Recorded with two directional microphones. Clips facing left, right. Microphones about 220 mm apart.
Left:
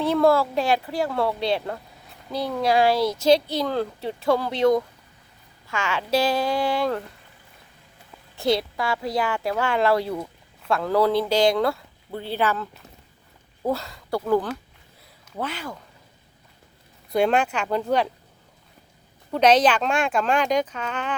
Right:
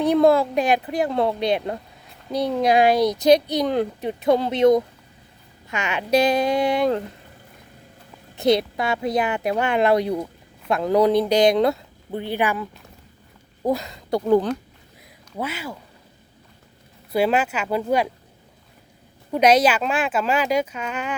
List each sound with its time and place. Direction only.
0.0 s speech: 20° right (ahead or behind)
8.4 s speech: 20° right (ahead or behind)
13.7 s speech: 15° right (ahead or behind)
15.4 s speech: 10° right (ahead or behind)
17.1 s speech: 5° right (ahead or behind)
19.3 s speech: 10° right (ahead or behind)